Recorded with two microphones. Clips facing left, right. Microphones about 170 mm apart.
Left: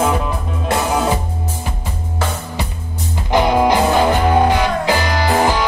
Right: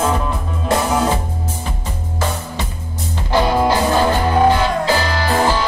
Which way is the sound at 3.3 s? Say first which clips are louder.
Left 2 dB; 15° left (ahead or behind).